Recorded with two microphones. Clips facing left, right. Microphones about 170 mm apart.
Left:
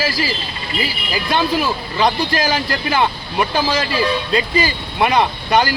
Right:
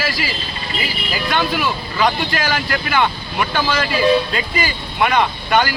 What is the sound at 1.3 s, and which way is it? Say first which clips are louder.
Speech: left 2 dB; 35° left (ahead or behind).